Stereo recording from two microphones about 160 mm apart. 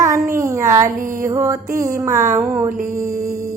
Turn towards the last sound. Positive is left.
turn(degrees=-20)  # may be behind; listen again after turning